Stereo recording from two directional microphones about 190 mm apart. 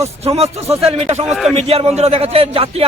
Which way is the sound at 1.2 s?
Centre (ahead or behind).